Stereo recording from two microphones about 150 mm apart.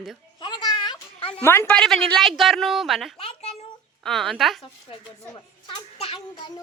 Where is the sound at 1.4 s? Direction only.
15° left (ahead or behind).